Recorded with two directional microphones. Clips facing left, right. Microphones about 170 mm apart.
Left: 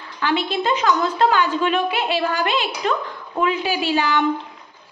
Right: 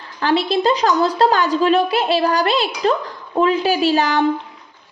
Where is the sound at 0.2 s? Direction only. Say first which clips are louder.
Right 5 dB; 35° right (ahead or behind).